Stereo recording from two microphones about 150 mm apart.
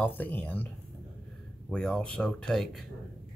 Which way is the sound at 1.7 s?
5° left (ahead or behind).